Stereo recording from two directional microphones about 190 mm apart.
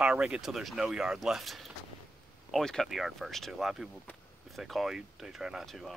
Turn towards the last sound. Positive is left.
turn(degrees=0)  # may be behind; listen again after turning